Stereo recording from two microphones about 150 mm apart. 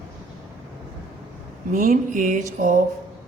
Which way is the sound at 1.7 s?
60° right (ahead or behind).